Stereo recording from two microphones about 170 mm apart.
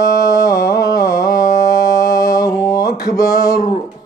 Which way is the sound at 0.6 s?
20° left (ahead or behind).